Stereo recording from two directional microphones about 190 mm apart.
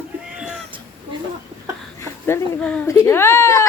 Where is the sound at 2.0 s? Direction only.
15° left (ahead or behind).